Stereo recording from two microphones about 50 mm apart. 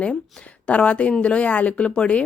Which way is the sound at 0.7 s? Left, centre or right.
Left.